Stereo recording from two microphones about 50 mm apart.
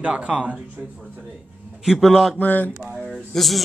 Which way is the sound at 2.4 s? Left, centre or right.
Left.